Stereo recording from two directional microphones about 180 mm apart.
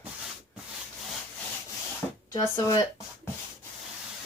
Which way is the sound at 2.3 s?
20° left (ahead or behind).